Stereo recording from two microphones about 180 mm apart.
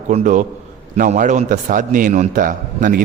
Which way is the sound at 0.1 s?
45° right (ahead or behind).